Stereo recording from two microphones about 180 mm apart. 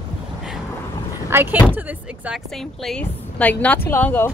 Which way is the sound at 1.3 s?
10° right (ahead or behind).